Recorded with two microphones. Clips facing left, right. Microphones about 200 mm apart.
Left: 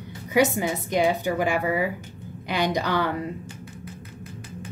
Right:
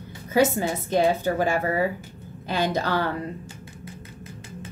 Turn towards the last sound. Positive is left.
turn(degrees=15)  # may be behind; listen again after turning